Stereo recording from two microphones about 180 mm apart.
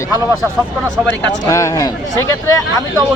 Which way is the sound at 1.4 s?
20° left (ahead or behind).